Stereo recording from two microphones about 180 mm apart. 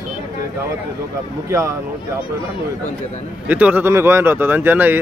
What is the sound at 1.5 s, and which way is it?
Speech, 15° right (ahead or behind).